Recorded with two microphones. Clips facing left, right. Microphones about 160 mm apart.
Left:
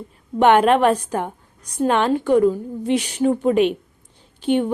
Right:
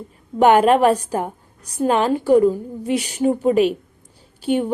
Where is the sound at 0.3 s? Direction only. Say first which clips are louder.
Right 1 dB; 10° right (ahead or behind).